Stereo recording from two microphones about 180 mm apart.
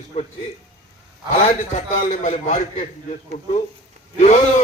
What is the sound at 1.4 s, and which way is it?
A man's voice, 40° left (ahead or behind).